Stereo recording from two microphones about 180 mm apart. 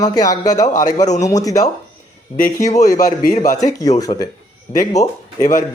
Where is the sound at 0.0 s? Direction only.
20° left (ahead or behind).